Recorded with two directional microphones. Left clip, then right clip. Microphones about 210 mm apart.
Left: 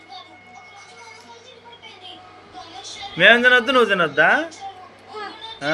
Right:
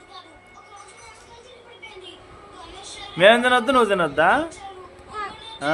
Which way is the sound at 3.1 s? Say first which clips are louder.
Left 2 dB; 20° right (ahead or behind).